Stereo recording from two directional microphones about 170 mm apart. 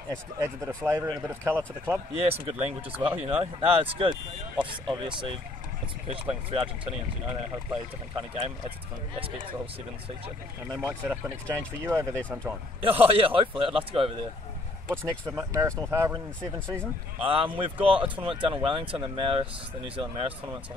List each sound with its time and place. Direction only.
0.8 s speech: 15° right (ahead or behind)
2.2 s a man's voice: 35° right (ahead or behind)
10.7 s speech: 20° right (ahead or behind)
12.8 s a man's voice: 35° right (ahead or behind)
14.9 s speech: 15° right (ahead or behind)
17.2 s a man's voice: 35° right (ahead or behind)